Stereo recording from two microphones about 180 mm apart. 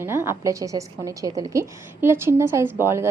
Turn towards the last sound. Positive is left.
turn(degrees=-15)  # may be behind; listen again after turning